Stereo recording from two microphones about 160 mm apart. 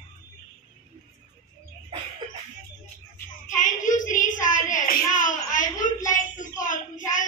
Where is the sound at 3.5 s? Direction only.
55° left (ahead or behind).